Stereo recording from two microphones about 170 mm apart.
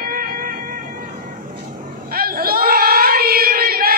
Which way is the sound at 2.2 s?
60° right (ahead or behind).